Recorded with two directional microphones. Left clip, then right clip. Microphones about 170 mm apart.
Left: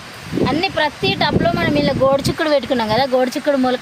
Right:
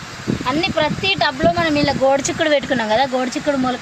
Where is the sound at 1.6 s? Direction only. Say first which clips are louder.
Even; 35° left (ahead or behind).